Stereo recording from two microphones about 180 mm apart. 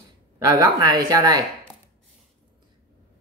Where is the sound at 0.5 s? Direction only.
20° right (ahead or behind).